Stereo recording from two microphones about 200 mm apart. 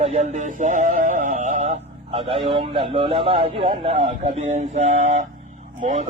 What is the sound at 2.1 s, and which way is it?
A man's voice, 30° right (ahead or behind).